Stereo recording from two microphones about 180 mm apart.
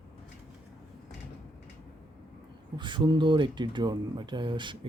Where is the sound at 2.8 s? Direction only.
25° right (ahead or behind).